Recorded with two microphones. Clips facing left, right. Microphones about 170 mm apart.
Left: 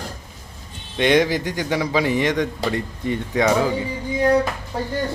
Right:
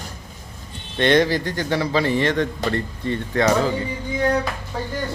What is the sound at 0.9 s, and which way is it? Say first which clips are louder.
Speech: even; 10° left (ahead or behind).